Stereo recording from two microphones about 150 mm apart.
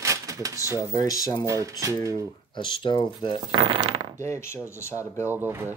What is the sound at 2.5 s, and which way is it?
Speech, 30° left (ahead or behind).